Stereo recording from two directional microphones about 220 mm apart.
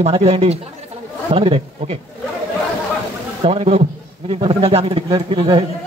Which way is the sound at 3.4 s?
25° right (ahead or behind).